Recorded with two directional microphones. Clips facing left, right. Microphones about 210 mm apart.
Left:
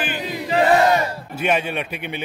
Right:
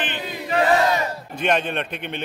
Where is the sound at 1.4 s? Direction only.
5° left (ahead or behind).